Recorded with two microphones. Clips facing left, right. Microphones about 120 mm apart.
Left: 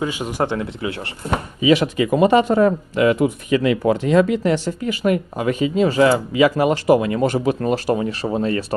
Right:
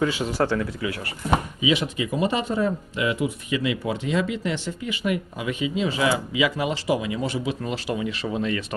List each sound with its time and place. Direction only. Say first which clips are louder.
0.0 s speech: left 1 dB; 15° left (ahead or behind)
1.6 s speech: left 8 dB; 65° left (ahead or behind); by 8.6 s 40° left (ahead or behind)